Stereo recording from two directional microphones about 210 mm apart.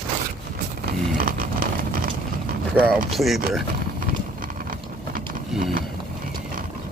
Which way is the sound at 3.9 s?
40° right (ahead or behind).